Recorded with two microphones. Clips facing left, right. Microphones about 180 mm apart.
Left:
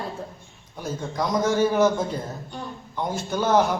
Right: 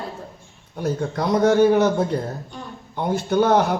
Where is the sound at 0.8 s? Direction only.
65° right (ahead or behind).